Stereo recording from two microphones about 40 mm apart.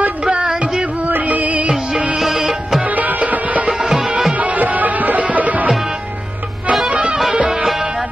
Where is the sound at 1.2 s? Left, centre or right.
Right.